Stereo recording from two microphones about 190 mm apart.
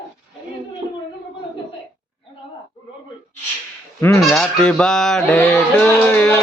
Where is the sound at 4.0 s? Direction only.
10° left (ahead or behind).